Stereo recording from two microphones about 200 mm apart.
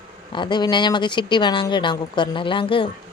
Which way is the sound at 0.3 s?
20° left (ahead or behind).